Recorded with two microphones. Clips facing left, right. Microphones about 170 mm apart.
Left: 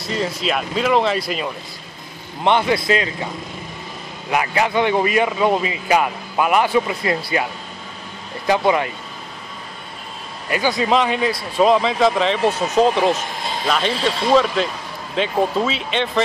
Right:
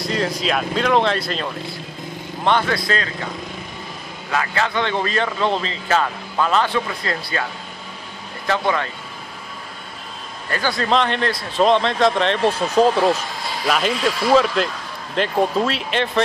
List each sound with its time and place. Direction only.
0.0 s speech: 5° left (ahead or behind)
2.4 s speech: 20° left (ahead or behind)
4.3 s speech: 15° left (ahead or behind)
8.5 s speech: 15° left (ahead or behind)
10.5 s speech: 10° left (ahead or behind)
12.9 s speech: 15° left (ahead or behind)
13.7 s speech: 5° right (ahead or behind)